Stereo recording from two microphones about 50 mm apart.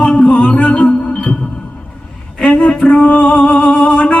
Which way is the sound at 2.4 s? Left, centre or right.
Left.